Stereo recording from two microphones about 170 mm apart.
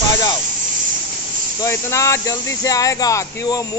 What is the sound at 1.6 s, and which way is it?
Speech, 15° left (ahead or behind).